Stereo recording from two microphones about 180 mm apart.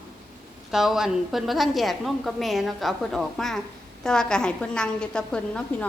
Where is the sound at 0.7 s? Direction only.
Centre (ahead or behind).